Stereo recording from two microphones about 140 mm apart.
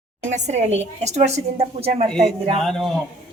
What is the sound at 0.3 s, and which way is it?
A woman's voice, 55° right (ahead or behind).